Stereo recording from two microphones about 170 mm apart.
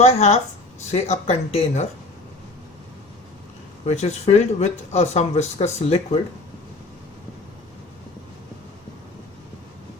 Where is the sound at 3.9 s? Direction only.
40° left (ahead or behind).